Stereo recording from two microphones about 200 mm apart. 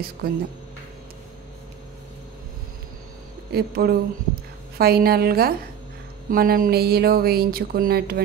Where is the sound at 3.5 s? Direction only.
50° right (ahead or behind).